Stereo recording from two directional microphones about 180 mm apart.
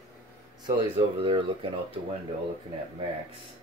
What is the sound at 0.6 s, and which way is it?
Speech, 30° right (ahead or behind).